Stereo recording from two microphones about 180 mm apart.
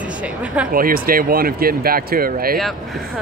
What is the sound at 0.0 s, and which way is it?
Speech, 5° right (ahead or behind).